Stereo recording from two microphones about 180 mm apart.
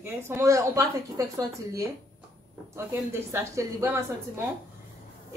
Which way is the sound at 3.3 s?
15° right (ahead or behind).